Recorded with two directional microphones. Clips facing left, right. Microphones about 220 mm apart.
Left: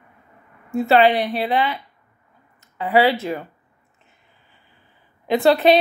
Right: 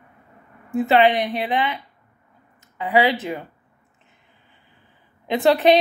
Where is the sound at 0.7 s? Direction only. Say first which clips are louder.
Left 1 dB; 15° right (ahead or behind).